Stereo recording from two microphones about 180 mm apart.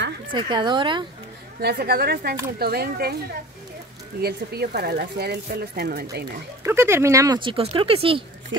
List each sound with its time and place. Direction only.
0.3 s speech: 25° right (ahead or behind)
1.6 s speech: 60° right (ahead or behind)
4.2 s speech: 60° right (ahead or behind)
6.6 s speech: 15° right (ahead or behind); by 8.2 s 30° right (ahead or behind)